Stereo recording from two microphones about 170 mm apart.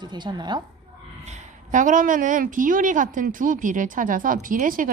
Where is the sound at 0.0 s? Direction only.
25° right (ahead or behind).